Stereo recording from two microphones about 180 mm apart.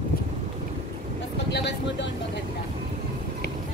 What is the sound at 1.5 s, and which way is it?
Speech, 70° left (ahead or behind).